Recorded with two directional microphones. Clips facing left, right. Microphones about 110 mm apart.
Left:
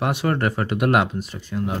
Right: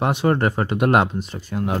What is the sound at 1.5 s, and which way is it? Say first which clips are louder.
Speech: right 2 dB; 55° right (ahead or behind).